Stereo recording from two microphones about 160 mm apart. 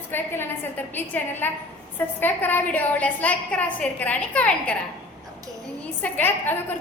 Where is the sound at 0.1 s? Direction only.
15° left (ahead or behind).